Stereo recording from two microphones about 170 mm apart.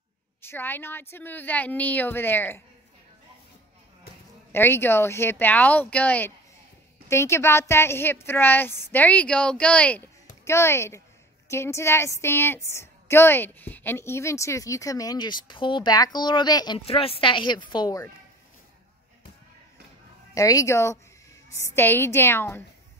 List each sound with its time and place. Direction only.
0.4 s a woman's voice: 10° left (ahead or behind)
4.5 s a woman's voice: 15° left (ahead or behind)
20.3 s a woman's voice: 20° left (ahead or behind)